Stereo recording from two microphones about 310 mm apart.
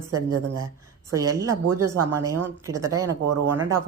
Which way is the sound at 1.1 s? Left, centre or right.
Centre.